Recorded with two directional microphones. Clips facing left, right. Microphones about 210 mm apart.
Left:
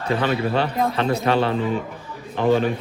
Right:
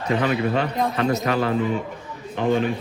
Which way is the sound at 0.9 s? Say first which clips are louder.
Left 2 dB; 30° left (ahead or behind).